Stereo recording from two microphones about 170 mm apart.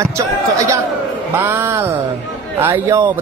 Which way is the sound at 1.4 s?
15° right (ahead or behind).